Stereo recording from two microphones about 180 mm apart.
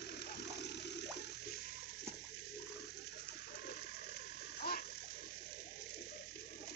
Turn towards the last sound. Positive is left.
turn(degrees=55)  # may be behind; listen again after turning